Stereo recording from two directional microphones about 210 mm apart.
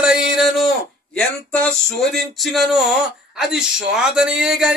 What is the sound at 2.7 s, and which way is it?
Speech, centre (ahead or behind).